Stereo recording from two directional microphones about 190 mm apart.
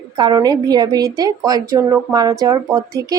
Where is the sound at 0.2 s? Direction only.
20° right (ahead or behind).